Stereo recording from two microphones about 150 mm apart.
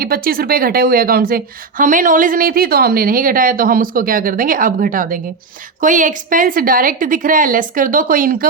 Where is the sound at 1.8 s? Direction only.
65° right (ahead or behind).